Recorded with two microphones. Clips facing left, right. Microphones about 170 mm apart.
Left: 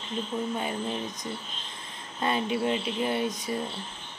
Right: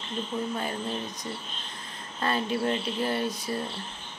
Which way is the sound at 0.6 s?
15° left (ahead or behind).